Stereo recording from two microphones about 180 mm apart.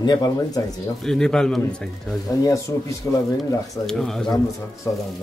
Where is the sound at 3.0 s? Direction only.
10° left (ahead or behind).